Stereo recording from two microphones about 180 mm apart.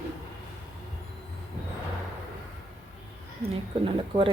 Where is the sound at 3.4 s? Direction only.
30° right (ahead or behind).